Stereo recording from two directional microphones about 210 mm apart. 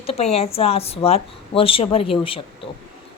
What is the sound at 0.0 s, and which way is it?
A woman's voice, 30° left (ahead or behind).